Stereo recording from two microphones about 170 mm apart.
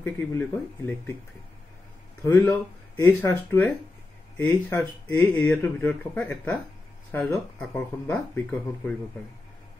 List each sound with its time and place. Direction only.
0.0 s speech: 10° left (ahead or behind)
2.2 s speech: 20° left (ahead or behind)